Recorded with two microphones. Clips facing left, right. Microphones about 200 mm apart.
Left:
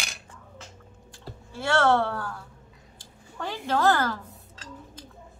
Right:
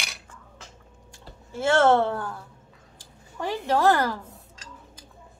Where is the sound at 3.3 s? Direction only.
10° right (ahead or behind).